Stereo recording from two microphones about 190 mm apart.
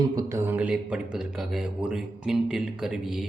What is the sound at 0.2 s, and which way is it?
Speech, 15° right (ahead or behind).